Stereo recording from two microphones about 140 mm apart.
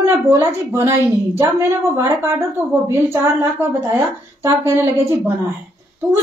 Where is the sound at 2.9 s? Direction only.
20° right (ahead or behind).